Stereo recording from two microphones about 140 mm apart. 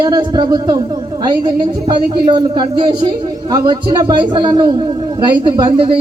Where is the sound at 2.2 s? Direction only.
30° right (ahead or behind).